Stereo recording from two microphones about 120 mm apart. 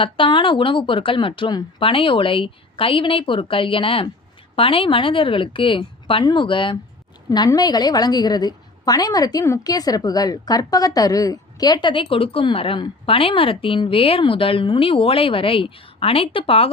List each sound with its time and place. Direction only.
0.0 s speech: 45° left (ahead or behind)
7.3 s a woman's voice: 30° left (ahead or behind); by 16.7 s 50° left (ahead or behind)